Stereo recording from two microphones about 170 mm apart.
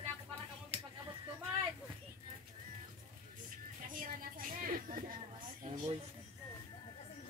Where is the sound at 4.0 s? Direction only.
55° right (ahead or behind).